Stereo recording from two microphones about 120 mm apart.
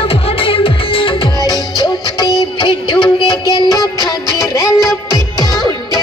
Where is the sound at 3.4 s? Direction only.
30° right (ahead or behind).